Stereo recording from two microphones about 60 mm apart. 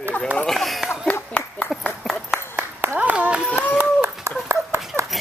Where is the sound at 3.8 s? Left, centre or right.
Right.